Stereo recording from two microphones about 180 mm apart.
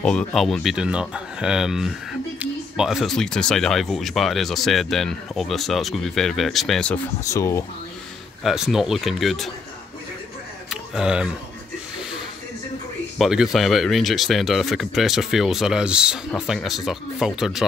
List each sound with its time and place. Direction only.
0.0 s speech: 5° left (ahead or behind)
7.2 s speech: 15° left (ahead or behind)
8.5 s speech: centre (ahead or behind)
10.7 s a sound: 5° right (ahead or behind)
13.2 s speech: centre (ahead or behind)